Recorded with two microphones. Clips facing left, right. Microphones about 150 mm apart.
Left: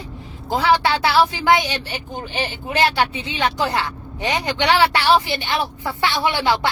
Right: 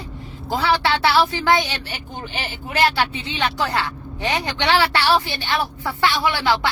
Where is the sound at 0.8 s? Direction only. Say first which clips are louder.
Left 1 dB; 15° left (ahead or behind).